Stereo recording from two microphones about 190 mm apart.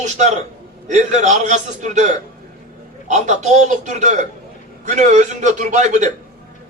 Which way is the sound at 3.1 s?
40° right (ahead or behind).